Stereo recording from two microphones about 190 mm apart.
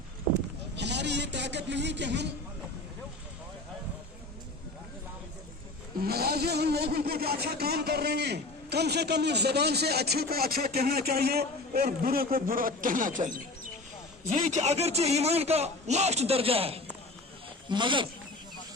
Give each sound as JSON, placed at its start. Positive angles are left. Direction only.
{"t": 0.8, "sound": "speech", "side_deg": -65}
{"t": 6.0, "sound": "a man's voice", "side_deg": -55}